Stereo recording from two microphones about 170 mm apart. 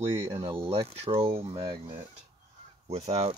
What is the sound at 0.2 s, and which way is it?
Speech, 15° right (ahead or behind).